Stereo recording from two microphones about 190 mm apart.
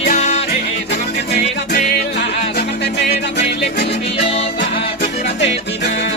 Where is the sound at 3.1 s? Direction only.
60° left (ahead or behind).